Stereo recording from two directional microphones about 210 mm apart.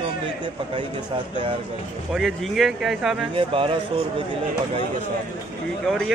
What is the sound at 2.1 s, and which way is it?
A man's voice, centre (ahead or behind).